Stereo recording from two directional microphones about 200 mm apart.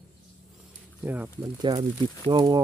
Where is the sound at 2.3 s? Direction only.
20° right (ahead or behind).